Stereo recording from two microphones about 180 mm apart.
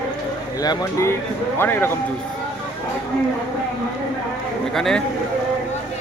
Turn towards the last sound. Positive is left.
turn(degrees=0)  # may be behind; listen again after turning